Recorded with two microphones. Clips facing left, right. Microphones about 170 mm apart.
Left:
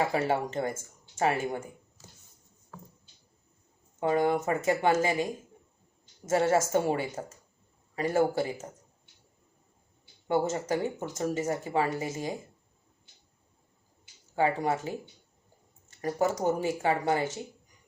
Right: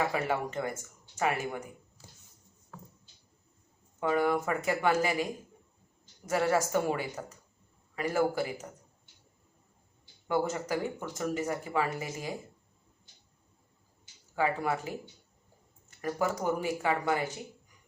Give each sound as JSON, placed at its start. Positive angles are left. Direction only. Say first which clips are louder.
{"t": 0.1, "sound": "speech", "louder": "left 3 dB", "side_deg": 25}
{"t": 4.0, "sound": "speech", "louder": "left 2 dB", "side_deg": 30}
{"t": 10.2, "sound": "speech", "louder": "left 3 dB", "side_deg": 25}
{"t": 14.3, "sound": "speech", "louder": "left 3 dB", "side_deg": 25}
{"t": 16.0, "sound": "speech", "louder": "left 3 dB", "side_deg": 25}